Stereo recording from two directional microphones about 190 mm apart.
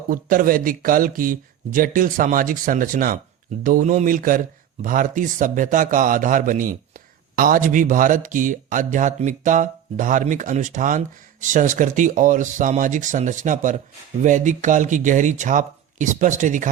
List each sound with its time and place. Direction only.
0.1 s speech: 45° right (ahead or behind)